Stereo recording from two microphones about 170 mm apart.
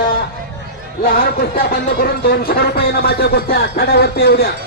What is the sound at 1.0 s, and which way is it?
Speech, 55° left (ahead or behind).